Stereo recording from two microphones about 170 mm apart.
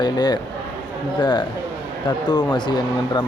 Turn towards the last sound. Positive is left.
turn(degrees=25)  # may be behind; listen again after turning